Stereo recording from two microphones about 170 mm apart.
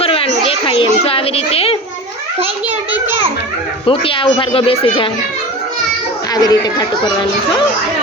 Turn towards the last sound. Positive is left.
turn(degrees=20)  # may be behind; listen again after turning